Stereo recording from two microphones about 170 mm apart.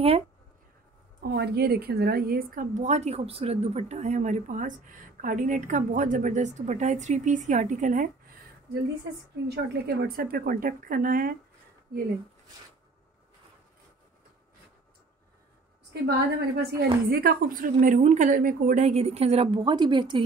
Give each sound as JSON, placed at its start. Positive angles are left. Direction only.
{"t": 1.2, "sound": "a woman's voice", "side_deg": -75}
{"t": 9.5, "sound": "speech", "side_deg": -70}
{"t": 15.9, "sound": "a woman's voice", "side_deg": -70}